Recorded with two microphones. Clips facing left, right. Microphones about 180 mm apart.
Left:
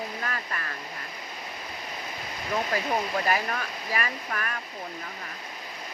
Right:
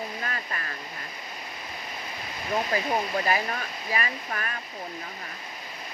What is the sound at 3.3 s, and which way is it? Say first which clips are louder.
Speech: even; 30° right (ahead or behind).